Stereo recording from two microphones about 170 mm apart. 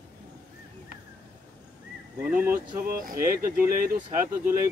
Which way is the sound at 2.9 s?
55° right (ahead or behind).